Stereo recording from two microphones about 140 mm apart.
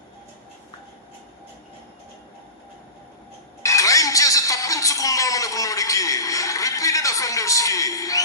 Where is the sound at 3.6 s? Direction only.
25° left (ahead or behind).